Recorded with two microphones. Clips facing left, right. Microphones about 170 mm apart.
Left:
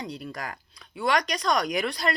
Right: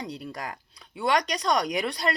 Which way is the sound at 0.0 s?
35° right (ahead or behind).